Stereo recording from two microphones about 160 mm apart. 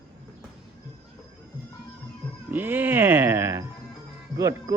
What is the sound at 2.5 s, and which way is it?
Music, 10° right (ahead or behind).